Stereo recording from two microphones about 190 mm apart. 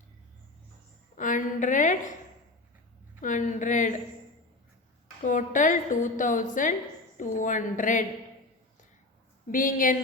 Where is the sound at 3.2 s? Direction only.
45° left (ahead or behind).